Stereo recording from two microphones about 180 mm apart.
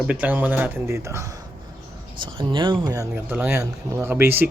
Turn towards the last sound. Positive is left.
turn(degrees=-10)  # may be behind; listen again after turning